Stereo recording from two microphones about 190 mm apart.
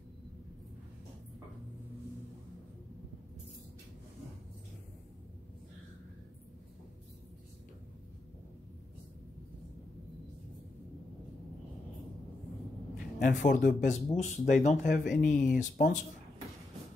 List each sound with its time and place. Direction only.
13.2 s speech: 50° left (ahead or behind)